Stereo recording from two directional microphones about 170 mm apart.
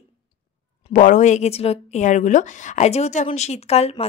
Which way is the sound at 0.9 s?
50° left (ahead or behind).